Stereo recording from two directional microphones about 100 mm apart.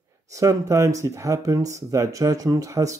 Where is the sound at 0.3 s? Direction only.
30° right (ahead or behind).